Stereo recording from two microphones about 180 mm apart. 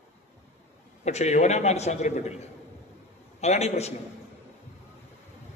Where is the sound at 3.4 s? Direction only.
35° left (ahead or behind).